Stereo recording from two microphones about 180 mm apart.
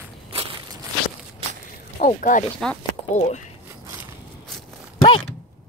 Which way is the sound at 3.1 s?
40° left (ahead or behind).